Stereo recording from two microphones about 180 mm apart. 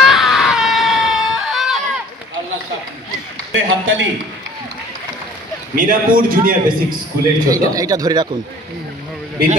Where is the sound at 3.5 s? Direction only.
90° right.